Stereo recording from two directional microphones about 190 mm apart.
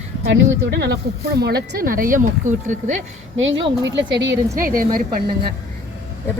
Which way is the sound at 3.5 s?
25° right (ahead or behind).